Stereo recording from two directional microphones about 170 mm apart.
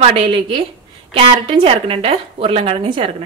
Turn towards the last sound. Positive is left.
turn(degrees=-30)  # may be behind; listen again after turning